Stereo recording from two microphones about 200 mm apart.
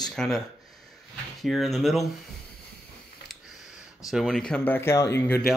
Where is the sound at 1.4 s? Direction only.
Centre (ahead or behind).